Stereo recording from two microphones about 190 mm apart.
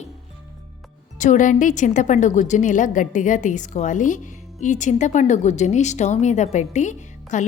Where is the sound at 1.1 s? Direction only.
40° left (ahead or behind).